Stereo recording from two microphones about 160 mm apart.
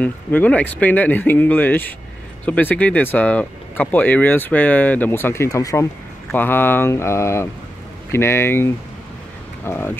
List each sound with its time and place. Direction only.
0.0 s speech: 10° left (ahead or behind)